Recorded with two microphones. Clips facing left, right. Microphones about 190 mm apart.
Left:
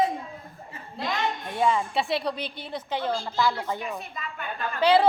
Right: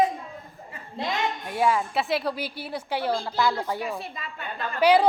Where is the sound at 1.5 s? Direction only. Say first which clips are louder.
Right 1 dB; 5° right (ahead or behind).